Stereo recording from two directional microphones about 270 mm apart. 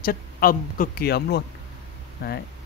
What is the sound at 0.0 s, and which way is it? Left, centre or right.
Speech, left.